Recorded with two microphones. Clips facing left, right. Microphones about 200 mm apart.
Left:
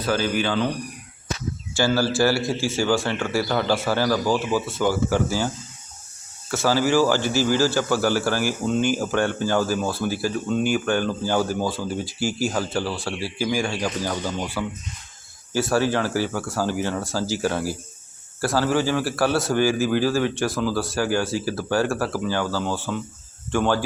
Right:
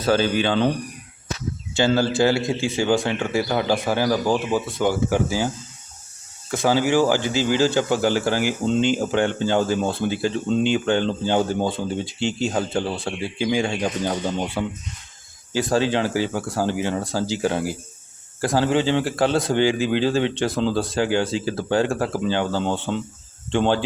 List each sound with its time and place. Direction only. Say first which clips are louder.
0.1 s a man's voice: right 3 dB; 25° right (ahead or behind)
1.7 s speech: right 2 dB; 20° right (ahead or behind)
6.5 s a man's voice: right 1 dB; 15° right (ahead or behind)